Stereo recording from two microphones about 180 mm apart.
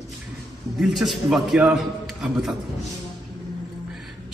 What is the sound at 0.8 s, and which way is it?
A man's voice, centre (ahead or behind).